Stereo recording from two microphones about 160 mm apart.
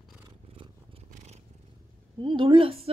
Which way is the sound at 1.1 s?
45° right (ahead or behind).